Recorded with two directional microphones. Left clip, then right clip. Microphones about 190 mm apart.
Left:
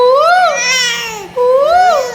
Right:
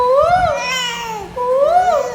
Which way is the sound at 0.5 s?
15° right (ahead or behind).